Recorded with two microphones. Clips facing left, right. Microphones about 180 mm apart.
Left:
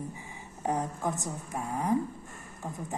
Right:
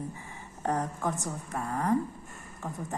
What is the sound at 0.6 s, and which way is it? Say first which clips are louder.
A woman's voice: even; 10° left (ahead or behind).